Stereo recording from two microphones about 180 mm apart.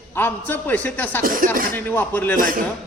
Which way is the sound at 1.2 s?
50° right (ahead or behind).